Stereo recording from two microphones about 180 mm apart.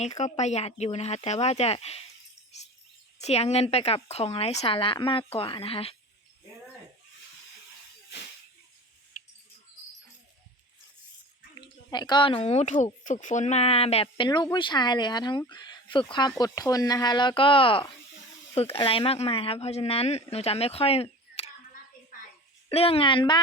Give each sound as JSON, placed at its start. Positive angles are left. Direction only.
{"t": 0.0, "sound": "speech", "side_deg": 40}
{"t": 3.2, "sound": "speech", "side_deg": 35}
{"t": 11.5, "sound": "a woman's voice", "side_deg": 25}
{"t": 22.7, "sound": "a woman's voice", "side_deg": 35}